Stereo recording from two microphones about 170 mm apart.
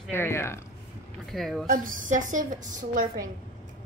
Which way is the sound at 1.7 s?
50° right (ahead or behind).